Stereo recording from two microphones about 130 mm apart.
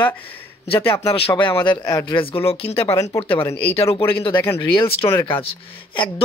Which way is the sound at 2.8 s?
25° left (ahead or behind).